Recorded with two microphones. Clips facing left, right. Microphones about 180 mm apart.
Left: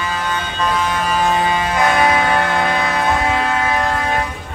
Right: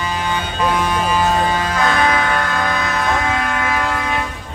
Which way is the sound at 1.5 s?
20° left (ahead or behind).